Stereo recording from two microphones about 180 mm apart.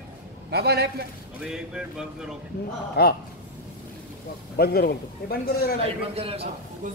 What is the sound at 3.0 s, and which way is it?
Speech, 65° left (ahead or behind).